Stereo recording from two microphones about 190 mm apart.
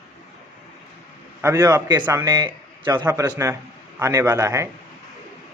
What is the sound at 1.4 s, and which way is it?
A man's voice, 15° right (ahead or behind).